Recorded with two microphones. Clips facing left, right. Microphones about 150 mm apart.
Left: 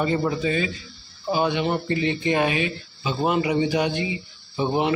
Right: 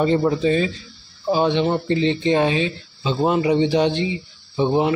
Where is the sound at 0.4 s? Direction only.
30° right (ahead or behind).